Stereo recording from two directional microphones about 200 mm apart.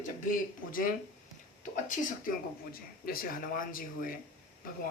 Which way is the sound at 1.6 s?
40° left (ahead or behind).